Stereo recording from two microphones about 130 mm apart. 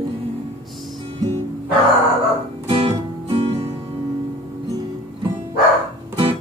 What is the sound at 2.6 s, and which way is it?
Music, 45° right (ahead or behind).